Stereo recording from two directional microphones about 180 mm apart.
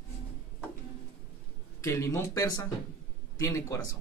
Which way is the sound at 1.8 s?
15° left (ahead or behind).